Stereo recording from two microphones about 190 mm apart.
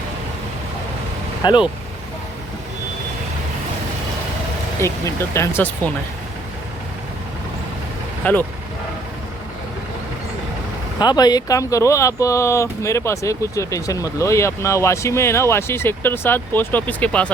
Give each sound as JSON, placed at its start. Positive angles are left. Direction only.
{"t": 1.4, "sound": "speech", "side_deg": 20}
{"t": 4.8, "sound": "speech", "side_deg": 15}
{"t": 8.2, "sound": "speech", "side_deg": 10}
{"t": 11.0, "sound": "speech", "side_deg": 20}